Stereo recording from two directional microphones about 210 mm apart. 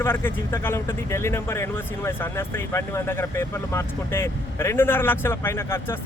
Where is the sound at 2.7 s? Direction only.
10° left (ahead or behind).